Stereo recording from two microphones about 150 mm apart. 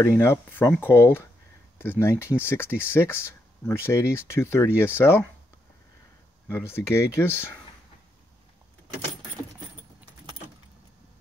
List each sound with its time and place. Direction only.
0.0 s speech: 15° left (ahead or behind)
6.5 s speech: 15° left (ahead or behind)